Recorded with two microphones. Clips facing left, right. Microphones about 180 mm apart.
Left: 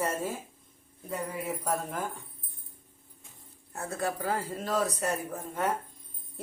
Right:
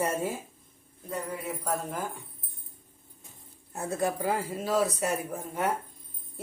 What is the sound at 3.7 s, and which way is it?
A woman's voice, 20° right (ahead or behind).